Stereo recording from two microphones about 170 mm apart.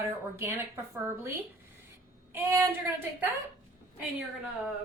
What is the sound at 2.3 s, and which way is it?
Speech, 15° right (ahead or behind).